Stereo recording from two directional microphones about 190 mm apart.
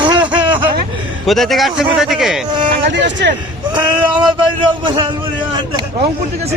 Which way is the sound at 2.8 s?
70° right (ahead or behind).